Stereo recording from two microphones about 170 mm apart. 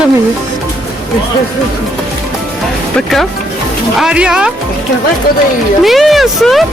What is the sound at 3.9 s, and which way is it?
Speech, 5° right (ahead or behind).